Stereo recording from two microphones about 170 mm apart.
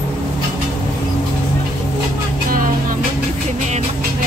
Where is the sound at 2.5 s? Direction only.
55° right (ahead or behind).